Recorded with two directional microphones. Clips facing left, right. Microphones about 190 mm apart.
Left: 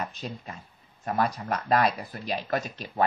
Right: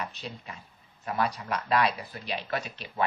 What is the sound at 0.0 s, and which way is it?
Speech, 45° left (ahead or behind).